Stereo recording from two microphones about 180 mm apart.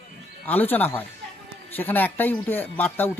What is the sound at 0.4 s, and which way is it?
Speech, 10° left (ahead or behind).